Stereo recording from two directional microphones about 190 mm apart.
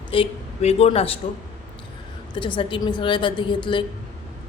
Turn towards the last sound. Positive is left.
turn(degrees=25)  # may be behind; listen again after turning